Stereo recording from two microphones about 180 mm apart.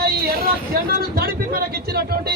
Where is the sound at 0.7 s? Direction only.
60° right (ahead or behind).